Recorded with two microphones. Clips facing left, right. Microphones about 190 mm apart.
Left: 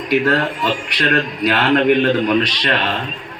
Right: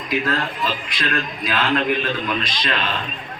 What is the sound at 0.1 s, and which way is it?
A man's voice, 65° left (ahead or behind).